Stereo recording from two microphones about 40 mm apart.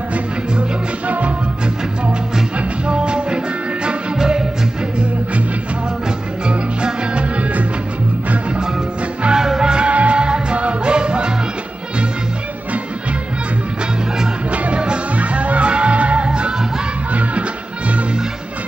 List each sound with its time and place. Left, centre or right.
0.1 s music: right
2.9 s music: right
6.4 s music: right
9.2 s music: centre
9.8 s music: right
14.5 s music: right
17.1 s music: right